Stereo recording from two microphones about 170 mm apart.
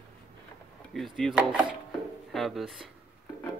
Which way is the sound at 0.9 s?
Centre (ahead or behind).